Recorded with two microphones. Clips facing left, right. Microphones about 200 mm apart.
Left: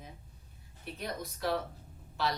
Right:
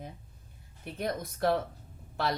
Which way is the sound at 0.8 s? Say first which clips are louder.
Right 5 dB; 50° right (ahead or behind).